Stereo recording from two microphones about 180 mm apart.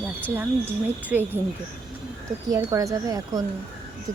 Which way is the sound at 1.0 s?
10° right (ahead or behind).